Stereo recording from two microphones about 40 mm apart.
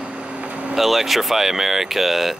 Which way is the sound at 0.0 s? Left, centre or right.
Right.